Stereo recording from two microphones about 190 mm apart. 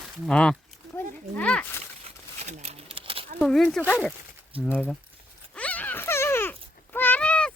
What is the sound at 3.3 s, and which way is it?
Speech, centre (ahead or behind).